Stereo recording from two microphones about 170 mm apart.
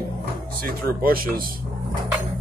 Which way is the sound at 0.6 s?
60° right (ahead or behind).